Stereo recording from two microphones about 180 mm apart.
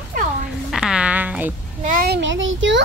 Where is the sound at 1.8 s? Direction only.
50° right (ahead or behind).